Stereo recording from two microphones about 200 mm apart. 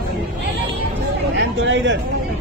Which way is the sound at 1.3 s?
60° right (ahead or behind).